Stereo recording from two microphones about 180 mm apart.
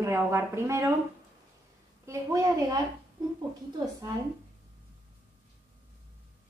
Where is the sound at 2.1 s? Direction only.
15° right (ahead or behind).